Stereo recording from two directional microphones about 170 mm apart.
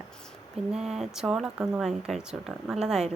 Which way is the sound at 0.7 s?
Centre (ahead or behind).